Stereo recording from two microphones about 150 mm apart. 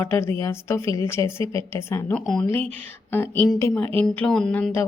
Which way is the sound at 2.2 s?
Centre (ahead or behind).